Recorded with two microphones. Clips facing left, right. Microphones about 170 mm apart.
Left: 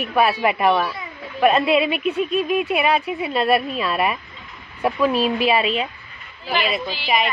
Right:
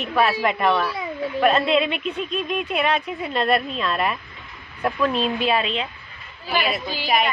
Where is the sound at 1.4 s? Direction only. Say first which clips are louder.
Left 3 dB; 5° left (ahead or behind).